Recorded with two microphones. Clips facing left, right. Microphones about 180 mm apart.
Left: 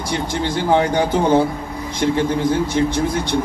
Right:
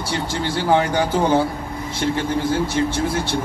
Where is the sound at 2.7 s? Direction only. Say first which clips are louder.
Left 2 dB; 15° left (ahead or behind).